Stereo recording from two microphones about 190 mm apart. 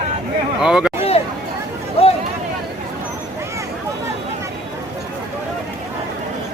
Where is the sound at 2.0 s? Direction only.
30° left (ahead or behind).